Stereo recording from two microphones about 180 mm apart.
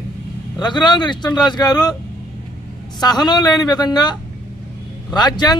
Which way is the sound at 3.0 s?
25° left (ahead or behind).